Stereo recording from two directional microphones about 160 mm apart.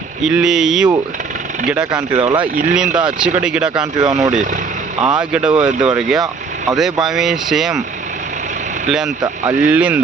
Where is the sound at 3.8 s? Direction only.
25° right (ahead or behind).